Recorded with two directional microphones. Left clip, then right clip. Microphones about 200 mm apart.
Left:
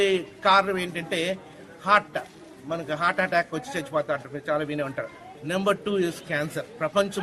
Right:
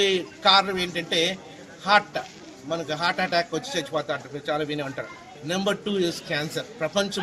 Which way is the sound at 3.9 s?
Centre (ahead or behind).